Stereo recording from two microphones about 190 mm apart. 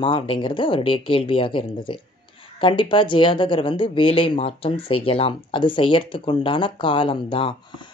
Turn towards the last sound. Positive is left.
turn(degrees=25)  # may be behind; listen again after turning